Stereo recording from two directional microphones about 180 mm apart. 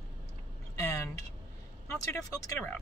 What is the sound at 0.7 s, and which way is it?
Speech, 15° left (ahead or behind).